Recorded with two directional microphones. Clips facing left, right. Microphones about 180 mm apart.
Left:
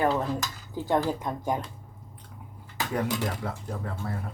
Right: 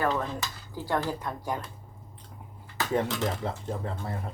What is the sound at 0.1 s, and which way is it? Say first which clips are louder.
Dishes: left 3 dB; 5° left (ahead or behind).